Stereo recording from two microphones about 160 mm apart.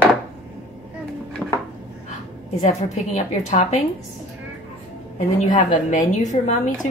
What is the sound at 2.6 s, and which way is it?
A woman's voice, 45° left (ahead or behind).